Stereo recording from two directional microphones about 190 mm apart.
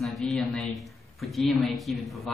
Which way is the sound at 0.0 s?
Centre (ahead or behind).